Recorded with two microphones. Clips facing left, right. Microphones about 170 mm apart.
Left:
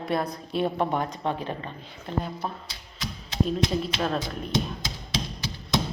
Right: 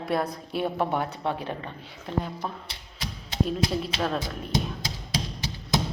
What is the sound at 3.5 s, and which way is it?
Speech, 5° right (ahead or behind).